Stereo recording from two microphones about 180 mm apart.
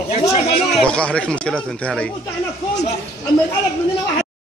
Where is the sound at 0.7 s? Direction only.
5° left (ahead or behind).